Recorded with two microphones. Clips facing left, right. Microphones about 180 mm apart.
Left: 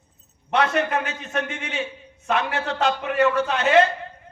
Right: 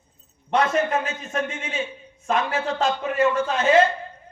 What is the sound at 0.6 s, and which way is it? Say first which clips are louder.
A man's voice: even; 70° left (ahead or behind).